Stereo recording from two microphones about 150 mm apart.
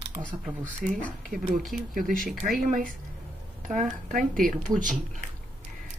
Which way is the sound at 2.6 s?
70° right (ahead or behind).